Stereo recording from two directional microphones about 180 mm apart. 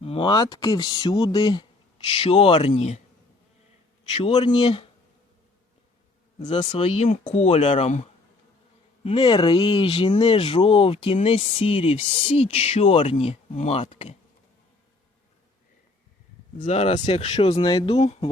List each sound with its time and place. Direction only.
0.0 s speech: 30° left (ahead or behind)
4.1 s speech: 35° left (ahead or behind)
6.4 s speech: 25° left (ahead or behind)
9.0 s speech: 30° left (ahead or behind)
16.6 s speech: 40° left (ahead or behind)